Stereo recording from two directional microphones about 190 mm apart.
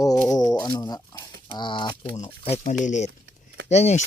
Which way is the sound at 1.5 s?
25° left (ahead or behind).